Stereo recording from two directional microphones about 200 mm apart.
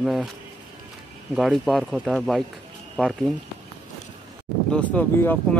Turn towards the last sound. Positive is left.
turn(degrees=10)  # may be behind; listen again after turning